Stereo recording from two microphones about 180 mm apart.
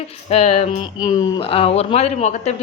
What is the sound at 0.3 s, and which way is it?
Speech, 35° left (ahead or behind).